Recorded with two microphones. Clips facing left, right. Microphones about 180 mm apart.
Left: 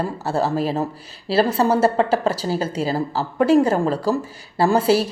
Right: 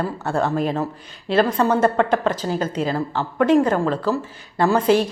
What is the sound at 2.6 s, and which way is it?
Speech, 10° left (ahead or behind).